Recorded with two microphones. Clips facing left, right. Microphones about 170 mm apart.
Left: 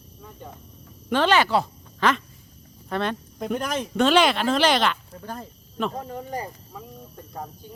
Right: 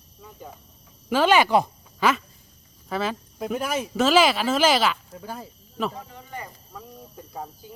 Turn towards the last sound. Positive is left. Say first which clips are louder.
# even
turn(degrees=-5)  # may be behind; listen again after turning